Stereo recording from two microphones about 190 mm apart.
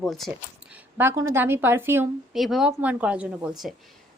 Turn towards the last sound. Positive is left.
turn(degrees=0)  # may be behind; listen again after turning